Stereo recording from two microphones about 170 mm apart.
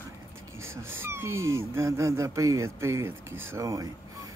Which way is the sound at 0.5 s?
15° right (ahead or behind).